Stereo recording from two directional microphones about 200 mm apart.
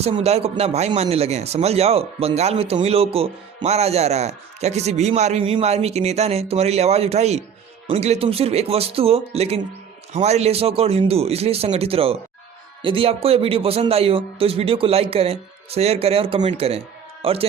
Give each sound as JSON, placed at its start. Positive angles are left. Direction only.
{"t": 0.0, "sound": "a man's voice", "side_deg": -30}